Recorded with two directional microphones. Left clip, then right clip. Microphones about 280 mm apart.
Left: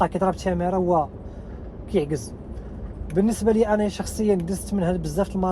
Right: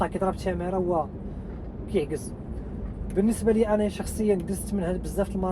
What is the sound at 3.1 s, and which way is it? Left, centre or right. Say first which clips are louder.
Speech: left 3 dB; left.